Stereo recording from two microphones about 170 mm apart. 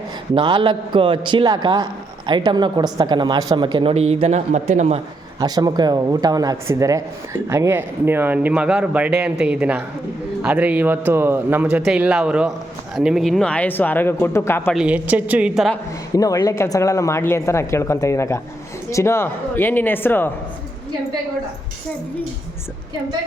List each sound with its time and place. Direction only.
0.3 s a man's voice: 30° right (ahead or behind)
5.4 s a man's voice: 25° right (ahead or behind); by 14.8 s 15° left (ahead or behind)
14.8 s speech: 10° right (ahead or behind)
16.1 s speech: 20° left (ahead or behind)